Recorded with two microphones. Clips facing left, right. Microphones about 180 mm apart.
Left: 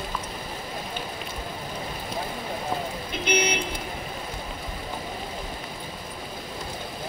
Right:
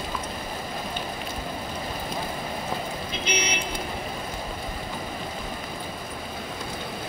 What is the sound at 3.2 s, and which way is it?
Speech, 55° left (ahead or behind).